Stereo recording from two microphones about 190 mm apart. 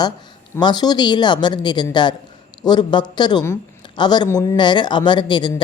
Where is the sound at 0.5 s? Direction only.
20° left (ahead or behind).